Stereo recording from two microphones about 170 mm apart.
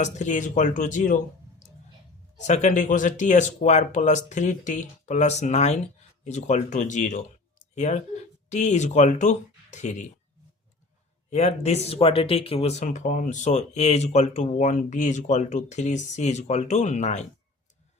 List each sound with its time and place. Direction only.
0.0 s speech: 45° left (ahead or behind)
11.3 s speech: 40° left (ahead or behind)